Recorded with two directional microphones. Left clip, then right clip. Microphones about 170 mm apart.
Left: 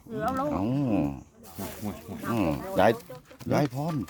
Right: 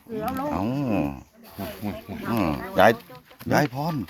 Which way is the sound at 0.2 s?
30° left (ahead or behind).